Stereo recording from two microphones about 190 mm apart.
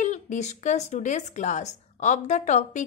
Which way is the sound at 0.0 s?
40° left (ahead or behind).